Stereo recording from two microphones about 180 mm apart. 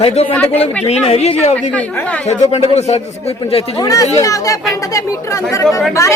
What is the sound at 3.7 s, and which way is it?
Speech, 20° left (ahead or behind).